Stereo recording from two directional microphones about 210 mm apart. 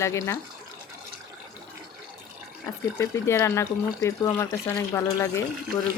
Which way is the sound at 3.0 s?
15° left (ahead or behind).